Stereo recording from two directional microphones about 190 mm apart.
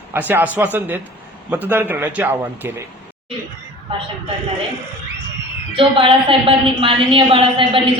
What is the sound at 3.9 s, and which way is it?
Speech, 25° right (ahead or behind).